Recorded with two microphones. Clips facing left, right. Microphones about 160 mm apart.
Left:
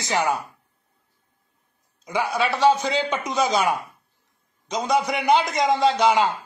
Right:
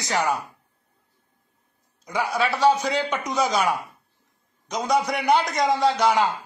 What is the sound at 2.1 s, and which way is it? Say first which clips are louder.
Speech: left 1 dB; 20° left (ahead or behind).